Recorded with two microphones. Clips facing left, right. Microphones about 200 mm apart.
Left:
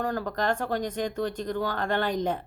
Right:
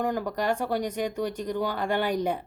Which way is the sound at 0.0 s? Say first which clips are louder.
Right 1 dB; 15° right (ahead or behind).